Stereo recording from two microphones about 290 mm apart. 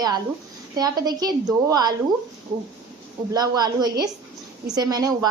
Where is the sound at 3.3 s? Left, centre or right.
Centre.